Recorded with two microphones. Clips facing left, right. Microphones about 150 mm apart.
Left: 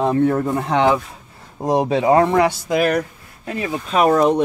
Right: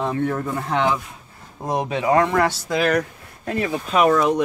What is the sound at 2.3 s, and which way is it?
Speech, 15° left (ahead or behind).